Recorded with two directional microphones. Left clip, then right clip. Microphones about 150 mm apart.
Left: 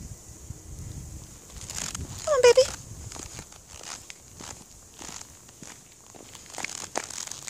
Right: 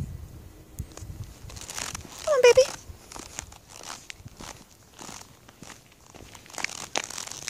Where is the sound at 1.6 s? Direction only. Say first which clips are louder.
Even; 35° right (ahead or behind).